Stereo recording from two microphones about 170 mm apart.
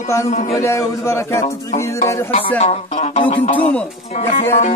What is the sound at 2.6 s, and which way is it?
Music, 40° left (ahead or behind).